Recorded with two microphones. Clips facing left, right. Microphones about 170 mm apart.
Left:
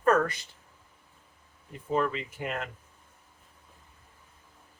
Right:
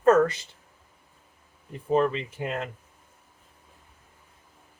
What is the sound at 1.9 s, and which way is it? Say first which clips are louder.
Speech: right 5 dB; 25° right (ahead or behind).